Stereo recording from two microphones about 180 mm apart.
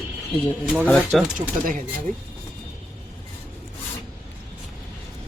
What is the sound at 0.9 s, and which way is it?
Speech, 5° left (ahead or behind).